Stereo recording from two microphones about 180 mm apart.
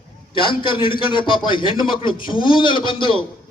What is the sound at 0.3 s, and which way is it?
A man's voice, 25° left (ahead or behind).